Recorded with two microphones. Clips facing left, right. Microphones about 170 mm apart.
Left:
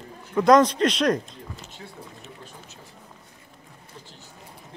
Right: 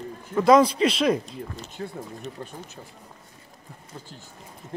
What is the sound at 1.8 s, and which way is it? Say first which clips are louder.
Speech: right 13 dB; 55° right (ahead or behind).